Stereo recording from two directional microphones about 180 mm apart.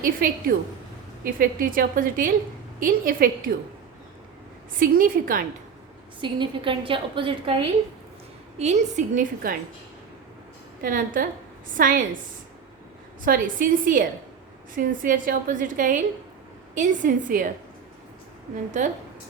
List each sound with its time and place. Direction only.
0.0 s a woman's voice: 50° right (ahead or behind)
4.8 s a woman's voice: 50° right (ahead or behind)
6.2 s a woman's voice: 30° right (ahead or behind)
8.5 s a woman's voice: 40° right (ahead or behind)
10.8 s a woman's voice: 50° right (ahead or behind)
13.2 s a woman's voice: 50° right (ahead or behind)
15.0 s a woman's voice: 50° right (ahead or behind)
18.5 s a woman's voice: 45° right (ahead or behind)